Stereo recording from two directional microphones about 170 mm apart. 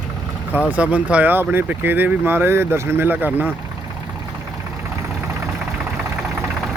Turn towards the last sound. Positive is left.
turn(degrees=0)  # may be behind; listen again after turning